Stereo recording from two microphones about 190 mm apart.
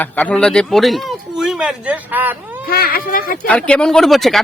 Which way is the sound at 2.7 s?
50° left (ahead or behind).